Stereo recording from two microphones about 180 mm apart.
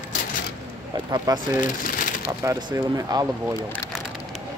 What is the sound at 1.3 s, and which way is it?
Speech, 20° right (ahead or behind).